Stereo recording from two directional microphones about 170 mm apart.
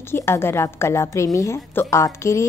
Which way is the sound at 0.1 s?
15° left (ahead or behind).